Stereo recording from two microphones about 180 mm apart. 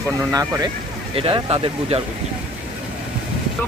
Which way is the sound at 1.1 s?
30° right (ahead or behind).